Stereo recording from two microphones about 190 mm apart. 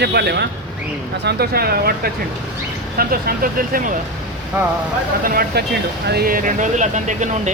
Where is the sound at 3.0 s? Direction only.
50° right (ahead or behind).